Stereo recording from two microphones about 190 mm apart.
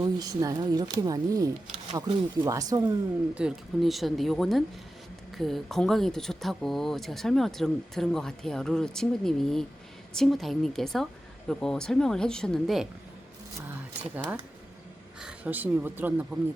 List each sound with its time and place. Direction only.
0.0 s speech: 20° right (ahead or behind)
3.3 s speech: centre (ahead or behind)
15.2 s speech: 5° right (ahead or behind)